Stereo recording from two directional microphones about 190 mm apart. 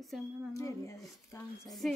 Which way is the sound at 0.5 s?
15° left (ahead or behind).